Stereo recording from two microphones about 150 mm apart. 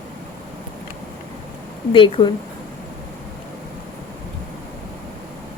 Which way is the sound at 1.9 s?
35° left (ahead or behind).